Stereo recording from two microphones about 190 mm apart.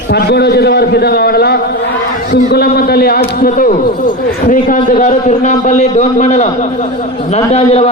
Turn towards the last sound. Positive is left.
turn(degrees=35)  # may be behind; listen again after turning